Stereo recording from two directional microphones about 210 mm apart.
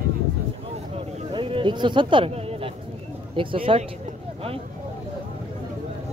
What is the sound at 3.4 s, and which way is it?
Speech, 25° right (ahead or behind).